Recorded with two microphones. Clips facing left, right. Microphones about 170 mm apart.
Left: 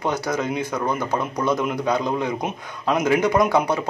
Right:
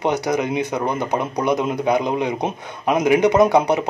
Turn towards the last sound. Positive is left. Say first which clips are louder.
# right 4 dB
turn(degrees=-20)  # may be behind; listen again after turning